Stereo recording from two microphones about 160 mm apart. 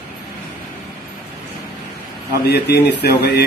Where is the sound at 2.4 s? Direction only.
90° left.